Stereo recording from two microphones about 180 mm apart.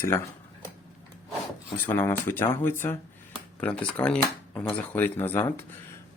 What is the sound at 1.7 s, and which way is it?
Speech, 10° left (ahead or behind).